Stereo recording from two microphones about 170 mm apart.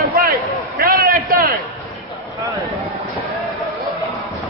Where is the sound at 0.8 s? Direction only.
60° right (ahead or behind).